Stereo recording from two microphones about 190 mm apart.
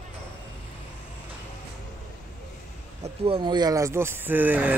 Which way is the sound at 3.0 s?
30° right (ahead or behind).